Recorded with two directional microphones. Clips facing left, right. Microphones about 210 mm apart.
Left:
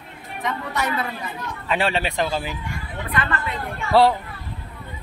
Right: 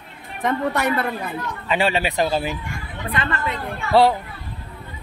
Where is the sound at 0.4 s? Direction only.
55° right (ahead or behind).